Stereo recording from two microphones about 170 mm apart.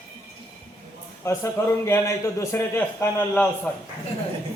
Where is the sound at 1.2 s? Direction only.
15° left (ahead or behind).